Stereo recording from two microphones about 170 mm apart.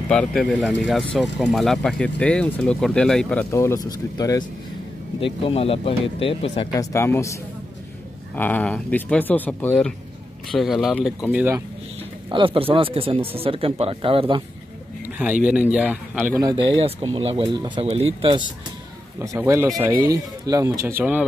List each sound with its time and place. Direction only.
0.1 s speech: 5° left (ahead or behind)
3.5 s speech: 20° left (ahead or behind)
5.2 s speech: 35° left (ahead or behind)
6.7 s speech: 20° left (ahead or behind)
8.4 s speech: 10° left (ahead or behind)
11.3 s a man's voice: 15° right (ahead or behind)
12.3 s speech: 30° right (ahead or behind)
15.4 s a man's voice: 5° right (ahead or behind)
16.5 s speech: 30° right (ahead or behind)
19.1 s a man's voice: 15° right (ahead or behind)